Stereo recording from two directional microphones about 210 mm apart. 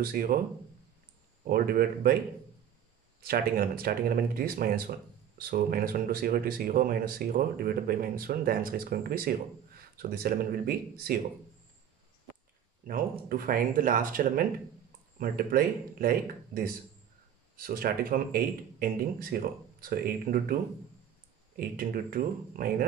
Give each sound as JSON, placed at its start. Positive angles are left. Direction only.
{"t": 0.0, "sound": "speech", "side_deg": -45}
{"t": 1.4, "sound": "speech", "side_deg": -45}
{"t": 3.3, "sound": "speech", "side_deg": -45}
{"t": 13.3, "sound": "speech", "side_deg": -40}
{"t": 21.5, "sound": "speech", "side_deg": -45}